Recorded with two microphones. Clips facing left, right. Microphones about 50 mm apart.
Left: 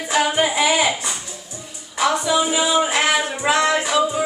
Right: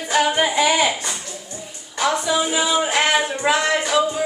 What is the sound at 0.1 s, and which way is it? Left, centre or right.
Music, centre.